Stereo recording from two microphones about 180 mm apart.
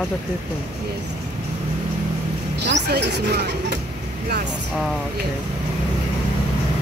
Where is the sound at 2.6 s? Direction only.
65° right (ahead or behind).